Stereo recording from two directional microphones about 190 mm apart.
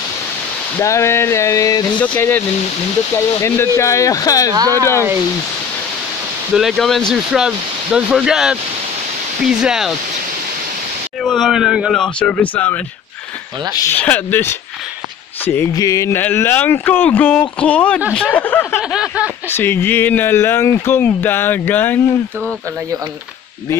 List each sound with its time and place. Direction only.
0.7 s speech: 15° left (ahead or behind)
4.6 s speech: 20° right (ahead or behind)
6.5 s speech: centre (ahead or behind)
11.2 s speech: centre (ahead or behind)
13.7 s speech: 10° left (ahead or behind)
18.8 s speech: 5° right (ahead or behind)
19.5 s speech: 10° left (ahead or behind)